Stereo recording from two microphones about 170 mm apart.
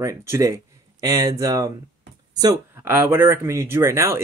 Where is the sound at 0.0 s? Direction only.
15° right (ahead or behind).